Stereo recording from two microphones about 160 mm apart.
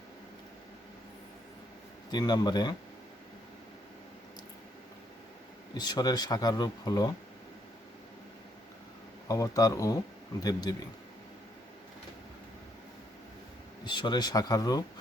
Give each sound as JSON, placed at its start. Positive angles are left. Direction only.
{"t": 2.0, "sound": "speech", "side_deg": 25}
{"t": 5.7, "sound": "speech", "side_deg": 25}
{"t": 9.2, "sound": "speech", "side_deg": 20}
{"t": 13.8, "sound": "speech", "side_deg": 30}